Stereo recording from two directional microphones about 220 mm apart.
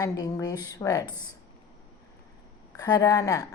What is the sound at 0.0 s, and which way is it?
Speech, 15° left (ahead or behind).